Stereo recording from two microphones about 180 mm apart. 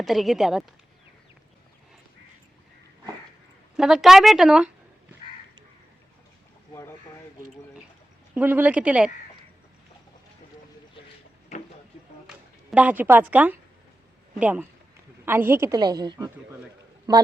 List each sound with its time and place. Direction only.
0.0 s speech: centre (ahead or behind)
3.8 s speech: 5° right (ahead or behind)
8.4 s a woman's voice: 10° right (ahead or behind)
12.3 s a woman's voice: 10° right (ahead or behind)